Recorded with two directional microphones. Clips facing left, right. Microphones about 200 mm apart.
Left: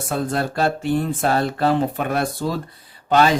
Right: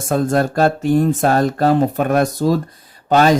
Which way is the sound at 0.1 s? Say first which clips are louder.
Right 7 dB; 45° right (ahead or behind).